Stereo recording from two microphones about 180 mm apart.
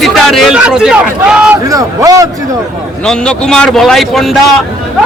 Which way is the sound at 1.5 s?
20° right (ahead or behind).